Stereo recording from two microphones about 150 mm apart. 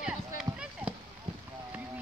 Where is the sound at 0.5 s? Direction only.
5° right (ahead or behind).